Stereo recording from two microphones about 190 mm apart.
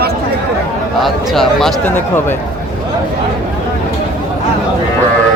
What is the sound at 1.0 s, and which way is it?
Speech, centre (ahead or behind).